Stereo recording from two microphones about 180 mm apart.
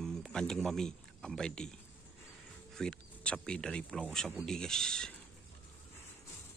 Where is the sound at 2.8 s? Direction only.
5° left (ahead or behind).